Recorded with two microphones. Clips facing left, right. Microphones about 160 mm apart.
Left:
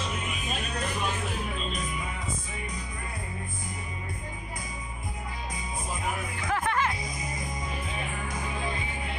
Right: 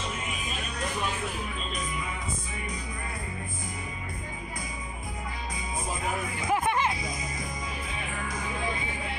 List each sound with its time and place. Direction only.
6.4 s music: 15° right (ahead or behind)